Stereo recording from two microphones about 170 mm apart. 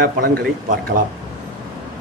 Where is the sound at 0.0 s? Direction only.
60° right (ahead or behind).